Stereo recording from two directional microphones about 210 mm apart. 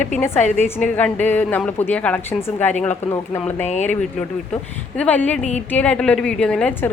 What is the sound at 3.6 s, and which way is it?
Speech, 35° left (ahead or behind).